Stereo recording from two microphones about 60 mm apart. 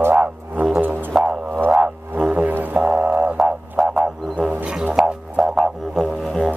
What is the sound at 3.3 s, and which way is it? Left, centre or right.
Didgeridoo, centre.